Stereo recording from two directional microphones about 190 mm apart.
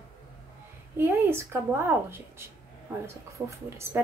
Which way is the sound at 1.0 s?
10° right (ahead or behind).